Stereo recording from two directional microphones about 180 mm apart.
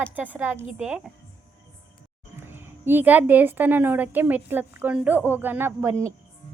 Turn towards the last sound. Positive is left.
turn(degrees=-15)  # may be behind; listen again after turning